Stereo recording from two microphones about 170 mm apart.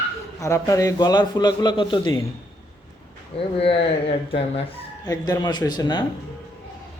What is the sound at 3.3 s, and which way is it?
Speech, 35° left (ahead or behind).